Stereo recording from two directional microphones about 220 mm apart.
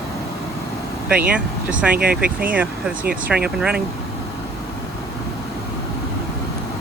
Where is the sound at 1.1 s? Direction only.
5° right (ahead or behind).